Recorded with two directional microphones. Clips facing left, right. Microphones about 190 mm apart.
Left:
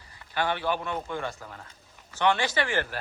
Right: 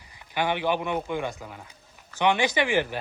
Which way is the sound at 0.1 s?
15° right (ahead or behind).